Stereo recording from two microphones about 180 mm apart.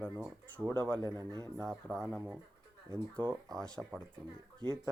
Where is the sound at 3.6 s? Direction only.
5° left (ahead or behind).